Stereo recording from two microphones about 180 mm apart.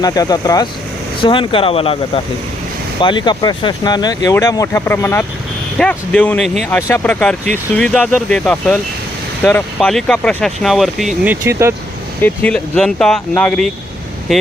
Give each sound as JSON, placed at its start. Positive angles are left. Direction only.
{"t": 0.0, "sound": "speech", "side_deg": 20}
{"t": 12.2, "sound": "speech", "side_deg": 5}